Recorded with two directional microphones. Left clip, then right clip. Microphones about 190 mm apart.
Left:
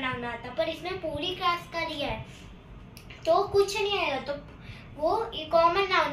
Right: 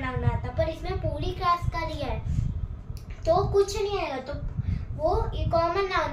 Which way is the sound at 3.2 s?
20° right (ahead or behind).